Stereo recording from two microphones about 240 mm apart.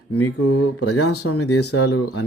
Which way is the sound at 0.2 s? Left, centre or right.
Left.